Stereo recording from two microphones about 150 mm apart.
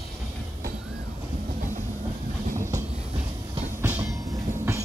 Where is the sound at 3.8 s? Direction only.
10° right (ahead or behind).